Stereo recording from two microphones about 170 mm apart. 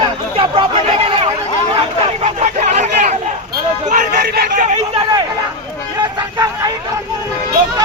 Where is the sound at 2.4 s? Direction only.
40° right (ahead or behind).